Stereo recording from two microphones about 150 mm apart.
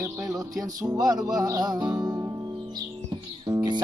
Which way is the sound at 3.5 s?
25° right (ahead or behind).